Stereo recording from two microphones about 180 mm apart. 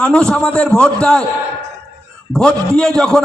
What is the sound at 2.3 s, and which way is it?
Speech, 5° left (ahead or behind).